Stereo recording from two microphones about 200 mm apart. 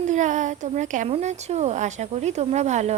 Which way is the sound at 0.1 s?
40° right (ahead or behind).